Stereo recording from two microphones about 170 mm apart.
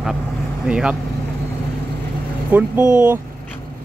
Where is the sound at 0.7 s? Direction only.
5° right (ahead or behind).